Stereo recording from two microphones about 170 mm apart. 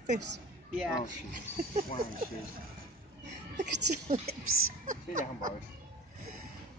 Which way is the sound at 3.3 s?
45° right (ahead or behind).